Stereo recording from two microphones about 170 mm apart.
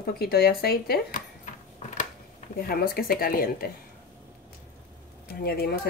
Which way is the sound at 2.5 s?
65° left (ahead or behind).